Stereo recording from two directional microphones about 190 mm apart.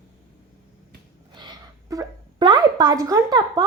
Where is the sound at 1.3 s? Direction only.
20° right (ahead or behind).